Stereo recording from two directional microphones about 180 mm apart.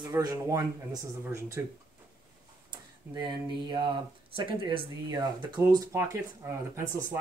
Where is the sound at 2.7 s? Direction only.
25° right (ahead or behind).